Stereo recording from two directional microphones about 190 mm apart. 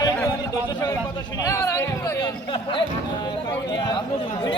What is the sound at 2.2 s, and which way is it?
Speech, 25° left (ahead or behind).